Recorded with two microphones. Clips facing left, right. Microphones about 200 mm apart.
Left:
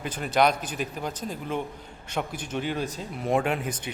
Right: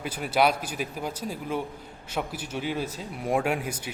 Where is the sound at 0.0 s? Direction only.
5° right (ahead or behind).